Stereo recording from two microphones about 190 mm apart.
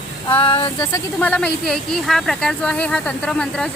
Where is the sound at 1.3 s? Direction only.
5° left (ahead or behind).